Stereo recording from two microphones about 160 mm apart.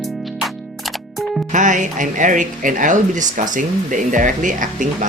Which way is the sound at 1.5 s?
50° right (ahead or behind).